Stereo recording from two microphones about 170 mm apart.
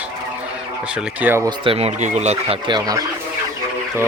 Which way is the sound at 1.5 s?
35° right (ahead or behind).